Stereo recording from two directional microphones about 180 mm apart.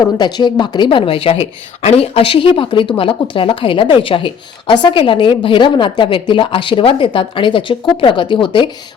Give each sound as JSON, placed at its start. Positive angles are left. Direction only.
{"t": 0.2, "sound": "a woman's voice", "side_deg": 25}